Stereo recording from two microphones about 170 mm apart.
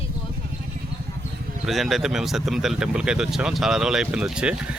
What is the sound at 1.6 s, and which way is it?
Speech, centre (ahead or behind).